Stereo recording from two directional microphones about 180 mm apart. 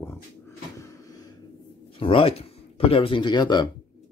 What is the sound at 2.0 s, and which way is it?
Speech, 30° left (ahead or behind).